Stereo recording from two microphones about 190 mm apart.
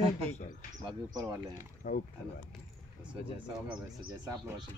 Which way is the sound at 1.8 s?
45° left (ahead or behind).